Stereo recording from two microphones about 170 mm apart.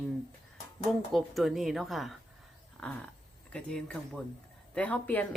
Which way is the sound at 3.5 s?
5° left (ahead or behind).